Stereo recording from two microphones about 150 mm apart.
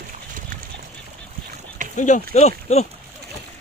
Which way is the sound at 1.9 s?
55° left (ahead or behind).